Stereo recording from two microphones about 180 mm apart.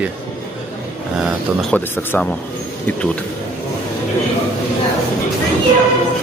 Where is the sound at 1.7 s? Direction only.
10° left (ahead or behind).